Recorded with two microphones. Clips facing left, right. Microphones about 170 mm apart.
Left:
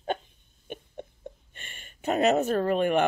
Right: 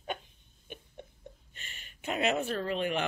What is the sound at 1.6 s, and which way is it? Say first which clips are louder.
Speech: left 4 dB; 55° left (ahead or behind).